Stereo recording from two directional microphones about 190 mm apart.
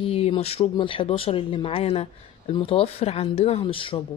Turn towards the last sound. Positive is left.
turn(degrees=30)  # may be behind; listen again after turning